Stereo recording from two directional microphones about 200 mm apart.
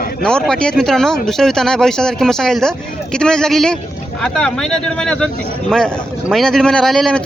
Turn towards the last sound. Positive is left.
turn(degrees=0)  # may be behind; listen again after turning